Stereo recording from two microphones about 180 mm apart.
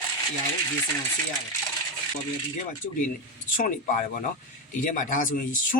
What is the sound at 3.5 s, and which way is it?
Speech, 45° left (ahead or behind).